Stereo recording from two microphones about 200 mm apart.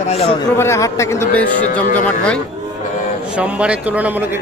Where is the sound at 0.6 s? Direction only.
15° left (ahead or behind).